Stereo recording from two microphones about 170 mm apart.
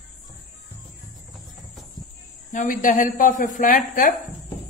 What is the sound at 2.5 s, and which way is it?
A woman's voice, 50° left (ahead or behind).